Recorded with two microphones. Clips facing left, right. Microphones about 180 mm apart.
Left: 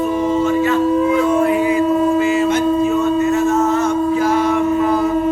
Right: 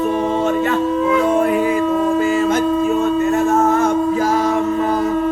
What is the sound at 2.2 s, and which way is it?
Train, 45° right (ahead or behind).